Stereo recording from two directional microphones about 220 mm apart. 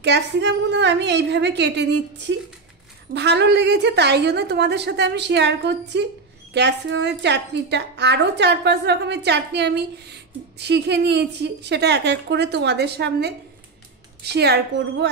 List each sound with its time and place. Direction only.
0.0 s a woman's voice: 50° right (ahead or behind)